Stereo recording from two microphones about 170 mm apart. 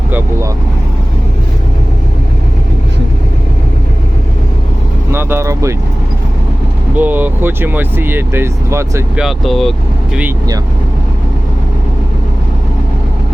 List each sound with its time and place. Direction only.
0.1 s speech: 15° right (ahead or behind)
5.1 s vehicle: 15° right (ahead or behind)
6.9 s speech: 10° right (ahead or behind)
9.1 s speech: centre (ahead or behind)